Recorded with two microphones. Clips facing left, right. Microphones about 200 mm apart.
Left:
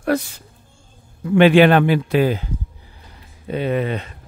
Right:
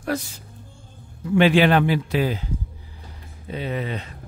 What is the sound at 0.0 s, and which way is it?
A man's voice, 65° left (ahead or behind).